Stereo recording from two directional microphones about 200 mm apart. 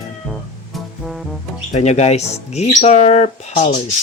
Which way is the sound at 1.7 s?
35° left (ahead or behind).